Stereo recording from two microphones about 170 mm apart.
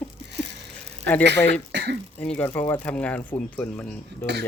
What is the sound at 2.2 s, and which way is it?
Speech, 10° left (ahead or behind).